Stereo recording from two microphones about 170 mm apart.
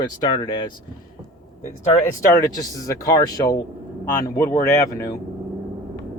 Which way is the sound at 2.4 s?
20° left (ahead or behind).